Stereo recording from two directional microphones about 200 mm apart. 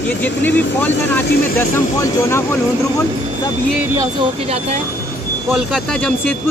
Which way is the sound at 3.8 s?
15° right (ahead or behind).